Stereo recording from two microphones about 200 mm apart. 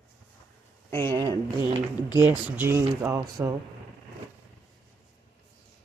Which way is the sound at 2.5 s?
10° right (ahead or behind).